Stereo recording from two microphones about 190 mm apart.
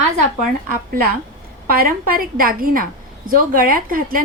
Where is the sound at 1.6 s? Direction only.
50° right (ahead or behind).